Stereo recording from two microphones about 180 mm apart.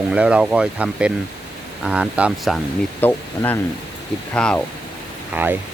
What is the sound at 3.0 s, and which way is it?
Speech, 10° left (ahead or behind).